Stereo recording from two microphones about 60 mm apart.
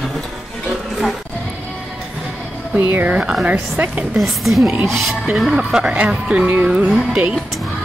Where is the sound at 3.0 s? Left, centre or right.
Right.